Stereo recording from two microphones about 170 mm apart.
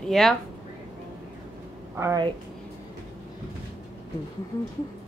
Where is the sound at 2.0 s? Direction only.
20° right (ahead or behind).